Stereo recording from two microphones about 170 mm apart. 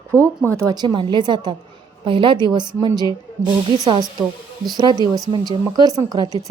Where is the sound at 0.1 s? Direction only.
15° right (ahead or behind).